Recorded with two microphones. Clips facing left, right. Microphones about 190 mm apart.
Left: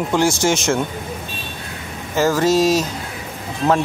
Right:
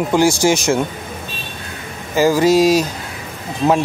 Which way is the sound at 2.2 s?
15° right (ahead or behind).